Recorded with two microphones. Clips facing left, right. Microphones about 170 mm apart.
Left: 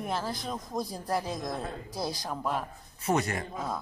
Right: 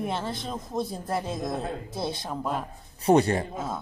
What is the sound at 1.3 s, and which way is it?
Speech, 25° right (ahead or behind).